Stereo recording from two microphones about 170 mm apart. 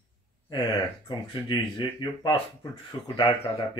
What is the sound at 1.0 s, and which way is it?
Speech, 30° left (ahead or behind).